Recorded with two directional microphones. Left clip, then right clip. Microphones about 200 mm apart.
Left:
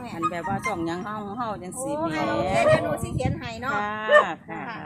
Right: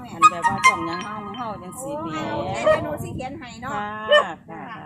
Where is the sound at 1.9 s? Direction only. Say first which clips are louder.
Left 2 dB; 40° left (ahead or behind).